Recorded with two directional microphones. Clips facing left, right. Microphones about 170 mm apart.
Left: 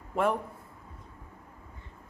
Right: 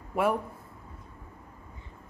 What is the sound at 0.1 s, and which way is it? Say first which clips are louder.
Speech: right 1 dB; 10° right (ahead or behind).